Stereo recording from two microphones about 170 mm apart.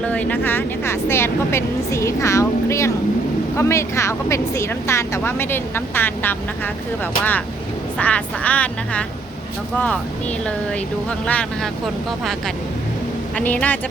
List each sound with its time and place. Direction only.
0.0 s speech: 10° left (ahead or behind)
11.3 s speech: 5° left (ahead or behind)
13.3 s speech: 10° left (ahead or behind)